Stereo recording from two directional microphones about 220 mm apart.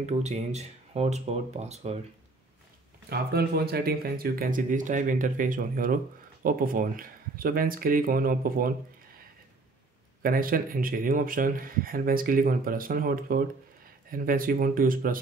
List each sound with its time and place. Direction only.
0.0 s speech: 30° right (ahead or behind)
3.1 s speech: 45° right (ahead or behind)
10.2 s speech: 40° right (ahead or behind)